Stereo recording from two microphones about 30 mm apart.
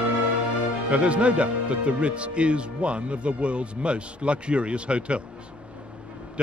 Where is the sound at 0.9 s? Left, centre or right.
Right.